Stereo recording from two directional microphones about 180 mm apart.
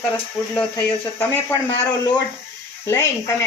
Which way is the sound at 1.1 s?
15° left (ahead or behind).